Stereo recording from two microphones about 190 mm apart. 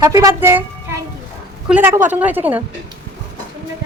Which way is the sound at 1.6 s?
10° right (ahead or behind).